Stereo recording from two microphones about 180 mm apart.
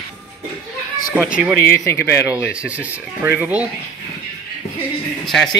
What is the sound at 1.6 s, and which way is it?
Speech, 15° left (ahead or behind).